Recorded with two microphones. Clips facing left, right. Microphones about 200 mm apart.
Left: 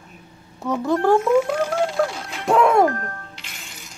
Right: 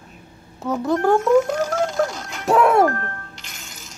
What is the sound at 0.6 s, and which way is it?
Music, centre (ahead or behind).